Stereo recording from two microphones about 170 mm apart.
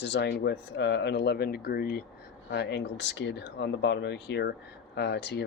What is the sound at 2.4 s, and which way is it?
Speech, 85° left.